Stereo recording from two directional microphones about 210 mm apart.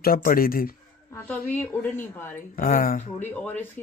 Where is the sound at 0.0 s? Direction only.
45° left (ahead or behind).